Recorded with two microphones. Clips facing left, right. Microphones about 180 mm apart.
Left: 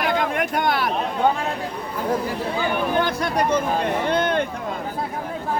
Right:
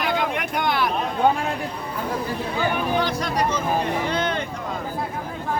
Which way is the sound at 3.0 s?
55° left (ahead or behind).